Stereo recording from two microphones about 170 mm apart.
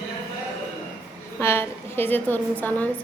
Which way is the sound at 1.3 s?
15° left (ahead or behind).